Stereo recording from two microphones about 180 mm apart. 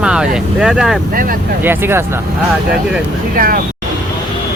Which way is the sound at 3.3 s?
50° right (ahead or behind).